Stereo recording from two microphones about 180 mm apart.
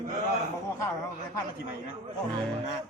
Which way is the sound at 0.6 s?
15° left (ahead or behind).